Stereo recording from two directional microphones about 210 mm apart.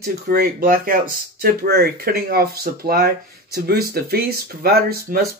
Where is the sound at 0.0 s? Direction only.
45° right (ahead or behind).